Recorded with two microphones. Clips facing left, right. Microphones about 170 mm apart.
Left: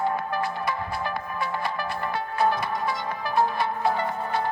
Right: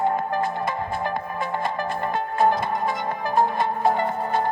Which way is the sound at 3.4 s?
45° right (ahead or behind).